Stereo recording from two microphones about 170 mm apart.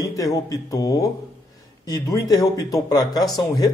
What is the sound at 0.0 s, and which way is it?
A man's voice, 20° left (ahead or behind).